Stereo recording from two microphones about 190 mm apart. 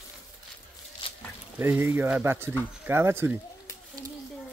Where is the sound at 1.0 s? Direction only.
25° left (ahead or behind).